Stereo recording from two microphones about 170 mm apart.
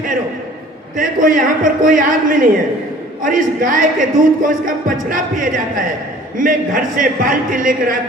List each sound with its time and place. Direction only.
0.9 s speech: 50° right (ahead or behind)